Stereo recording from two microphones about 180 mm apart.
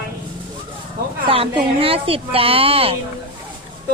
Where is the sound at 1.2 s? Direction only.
30° right (ahead or behind).